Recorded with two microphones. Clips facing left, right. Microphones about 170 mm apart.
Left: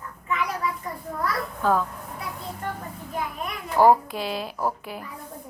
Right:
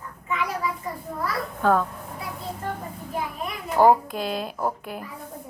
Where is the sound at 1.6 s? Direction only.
55° right (ahead or behind).